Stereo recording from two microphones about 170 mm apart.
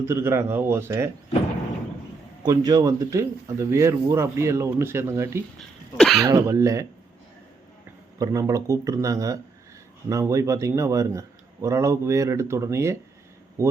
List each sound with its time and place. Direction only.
0.0 s a man's voice: 15° right (ahead or behind)
2.4 s a man's voice: 20° right (ahead or behind)
5.5 s speech: centre (ahead or behind)
6.2 s a man's voice: 20° right (ahead or behind)
8.2 s a man's voice: 20° right (ahead or behind)